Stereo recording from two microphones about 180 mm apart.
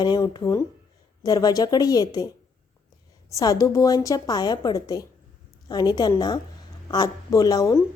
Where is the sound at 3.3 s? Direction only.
20° left (ahead or behind).